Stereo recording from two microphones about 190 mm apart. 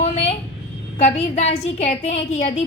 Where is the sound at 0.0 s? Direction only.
35° left (ahead or behind).